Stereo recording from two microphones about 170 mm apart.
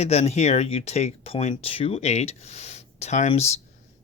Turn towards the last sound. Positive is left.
turn(degrees=45)  # may be behind; listen again after turning